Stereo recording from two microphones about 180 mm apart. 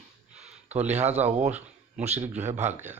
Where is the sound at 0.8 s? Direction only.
40° right (ahead or behind).